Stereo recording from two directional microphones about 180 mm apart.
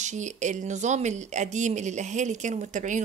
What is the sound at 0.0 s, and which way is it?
Speech, 40° right (ahead or behind).